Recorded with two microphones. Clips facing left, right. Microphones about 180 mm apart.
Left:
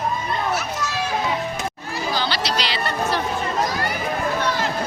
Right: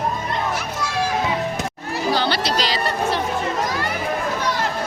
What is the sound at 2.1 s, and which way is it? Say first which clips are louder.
Chatter: right 3 dB; 60° right (ahead or behind).